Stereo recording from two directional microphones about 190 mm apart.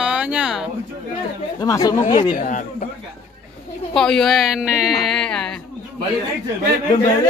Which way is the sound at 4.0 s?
5° left (ahead or behind).